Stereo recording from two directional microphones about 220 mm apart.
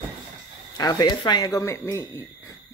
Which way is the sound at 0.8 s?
15° left (ahead or behind).